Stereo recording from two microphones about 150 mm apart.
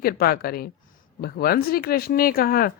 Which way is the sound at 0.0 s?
90° left.